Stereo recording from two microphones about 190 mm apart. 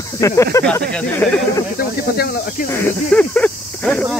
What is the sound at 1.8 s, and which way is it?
Speech, 50° left (ahead or behind).